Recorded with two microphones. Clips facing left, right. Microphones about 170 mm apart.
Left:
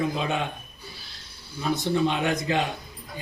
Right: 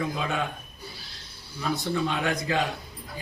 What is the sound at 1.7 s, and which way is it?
Speech, 20° left (ahead or behind).